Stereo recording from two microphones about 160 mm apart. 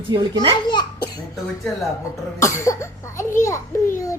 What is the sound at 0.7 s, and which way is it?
Speech, 25° left (ahead or behind).